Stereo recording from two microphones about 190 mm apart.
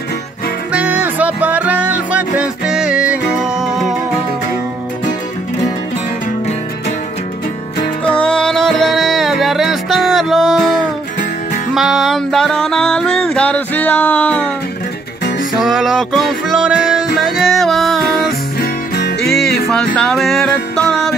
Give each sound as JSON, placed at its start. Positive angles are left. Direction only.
{"t": 0.7, "sound": "music", "side_deg": -10}
{"t": 8.0, "sound": "music", "side_deg": 5}
{"t": 11.7, "sound": "music", "side_deg": 0}
{"t": 15.6, "sound": "music", "side_deg": 0}
{"t": 18.6, "sound": "music", "side_deg": 60}
{"t": 19.2, "sound": "music", "side_deg": 0}